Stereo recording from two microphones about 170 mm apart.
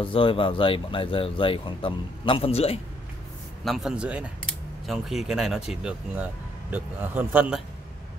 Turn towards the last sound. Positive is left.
turn(degrees=-5)  # may be behind; listen again after turning